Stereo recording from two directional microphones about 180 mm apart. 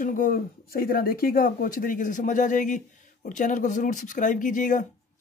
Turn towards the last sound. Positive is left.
turn(degrees=45)  # may be behind; listen again after turning